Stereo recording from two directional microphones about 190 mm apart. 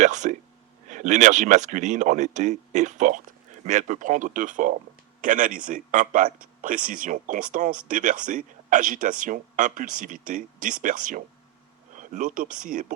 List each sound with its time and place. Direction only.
0.0 s a man's voice: 40° right (ahead or behind)